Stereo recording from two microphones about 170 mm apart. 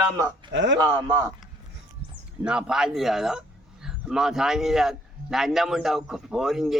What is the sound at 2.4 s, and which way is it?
A man's voice, 5° right (ahead or behind).